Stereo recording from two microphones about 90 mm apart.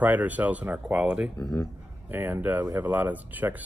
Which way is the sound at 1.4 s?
40° left (ahead or behind).